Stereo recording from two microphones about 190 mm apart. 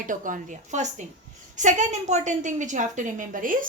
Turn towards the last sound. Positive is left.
turn(degrees=-45)  # may be behind; listen again after turning